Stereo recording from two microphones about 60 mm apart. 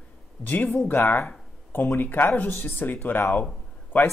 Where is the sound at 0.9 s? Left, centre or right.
Left.